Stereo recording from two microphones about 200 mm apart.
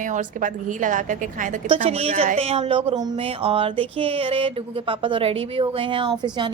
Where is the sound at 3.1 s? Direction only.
30° right (ahead or behind).